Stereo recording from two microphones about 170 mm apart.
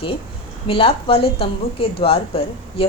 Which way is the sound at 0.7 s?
30° left (ahead or behind).